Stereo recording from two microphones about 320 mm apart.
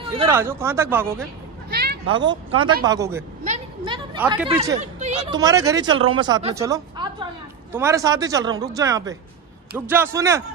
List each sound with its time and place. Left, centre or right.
0.0 s a woman's voice: centre
1.7 s a sound: right
2.1 s a woman's voice: centre
4.7 s speech: right
5.4 s a woman's voice: centre